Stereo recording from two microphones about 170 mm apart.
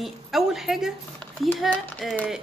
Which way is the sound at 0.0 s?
Centre (ahead or behind).